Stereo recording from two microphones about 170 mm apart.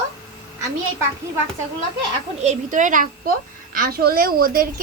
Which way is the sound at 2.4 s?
50° right (ahead or behind).